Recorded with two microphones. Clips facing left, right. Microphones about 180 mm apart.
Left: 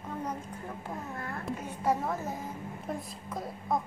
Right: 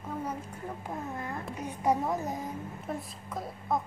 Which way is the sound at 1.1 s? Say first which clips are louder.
Even; 20° right (ahead or behind).